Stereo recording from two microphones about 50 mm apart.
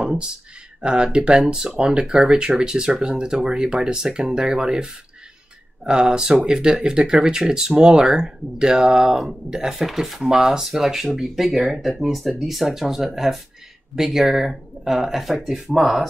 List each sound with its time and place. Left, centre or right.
0.0 s speech: centre
5.9 s speech: centre